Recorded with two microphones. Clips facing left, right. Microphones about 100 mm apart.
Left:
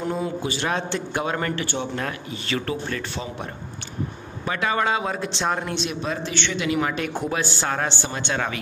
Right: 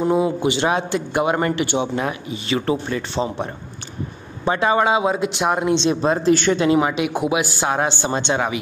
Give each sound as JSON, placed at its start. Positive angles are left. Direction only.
{"t": 0.0, "sound": "speech", "side_deg": -15}
{"t": 0.7, "sound": "speech", "side_deg": -10}
{"t": 4.5, "sound": "speech", "side_deg": -25}
{"t": 5.8, "sound": "speech", "side_deg": -30}
{"t": 6.8, "sound": "speech", "side_deg": -15}